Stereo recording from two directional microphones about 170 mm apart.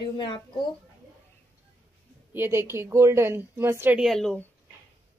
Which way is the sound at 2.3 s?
15° right (ahead or behind).